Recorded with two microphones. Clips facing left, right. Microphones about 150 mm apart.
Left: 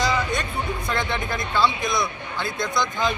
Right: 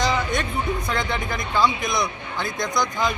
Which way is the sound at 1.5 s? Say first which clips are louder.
Right 1 dB; 20° right (ahead or behind).